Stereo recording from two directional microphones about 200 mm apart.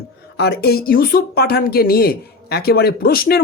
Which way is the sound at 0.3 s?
55° left (ahead or behind).